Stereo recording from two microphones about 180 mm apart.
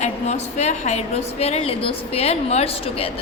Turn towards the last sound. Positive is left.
turn(degrees=30)  # may be behind; listen again after turning